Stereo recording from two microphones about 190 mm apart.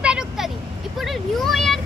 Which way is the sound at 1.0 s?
Centre (ahead or behind).